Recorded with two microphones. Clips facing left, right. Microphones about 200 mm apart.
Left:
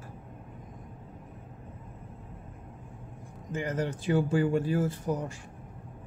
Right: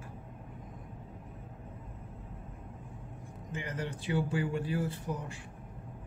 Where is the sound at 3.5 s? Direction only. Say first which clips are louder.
Left 7 dB; 45° left (ahead or behind).